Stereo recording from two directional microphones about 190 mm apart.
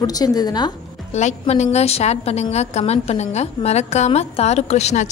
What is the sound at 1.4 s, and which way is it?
A woman's voice, 35° left (ahead or behind).